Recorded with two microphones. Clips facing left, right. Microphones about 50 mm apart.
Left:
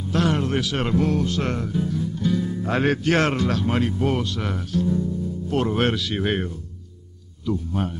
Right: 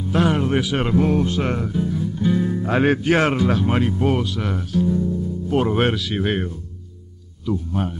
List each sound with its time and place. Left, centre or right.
0.1 s a sound: centre
0.8 s a man's voice: centre
2.3 s music: right
2.6 s a man's voice: centre